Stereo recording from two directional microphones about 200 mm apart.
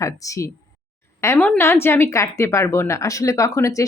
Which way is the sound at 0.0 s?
15° left (ahead or behind).